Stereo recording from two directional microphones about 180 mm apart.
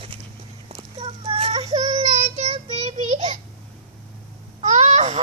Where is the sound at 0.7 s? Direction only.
30° right (ahead or behind).